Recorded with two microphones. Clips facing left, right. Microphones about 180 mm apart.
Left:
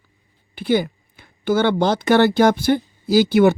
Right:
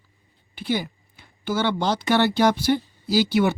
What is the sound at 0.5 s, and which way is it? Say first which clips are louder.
Speech: left 7 dB; 55° left (ahead or behind).